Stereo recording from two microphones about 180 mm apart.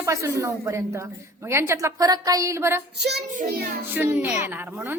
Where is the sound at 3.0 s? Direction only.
65° right (ahead or behind).